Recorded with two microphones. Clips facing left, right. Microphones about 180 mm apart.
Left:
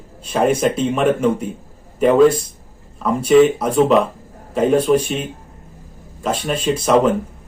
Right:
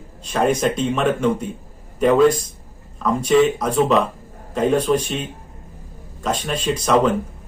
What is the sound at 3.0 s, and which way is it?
Speech, 10° left (ahead or behind).